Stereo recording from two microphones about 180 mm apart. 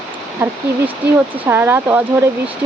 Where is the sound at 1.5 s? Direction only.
10° right (ahead or behind).